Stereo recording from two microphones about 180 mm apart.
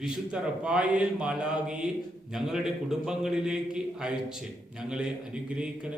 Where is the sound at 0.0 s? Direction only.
5° right (ahead or behind).